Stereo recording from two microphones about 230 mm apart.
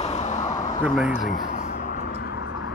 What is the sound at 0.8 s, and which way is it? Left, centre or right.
Speech, centre.